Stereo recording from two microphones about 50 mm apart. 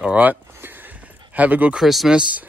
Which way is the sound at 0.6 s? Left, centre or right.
Right.